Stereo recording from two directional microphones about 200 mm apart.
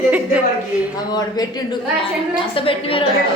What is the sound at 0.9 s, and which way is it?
A woman's voice, 20° left (ahead or behind).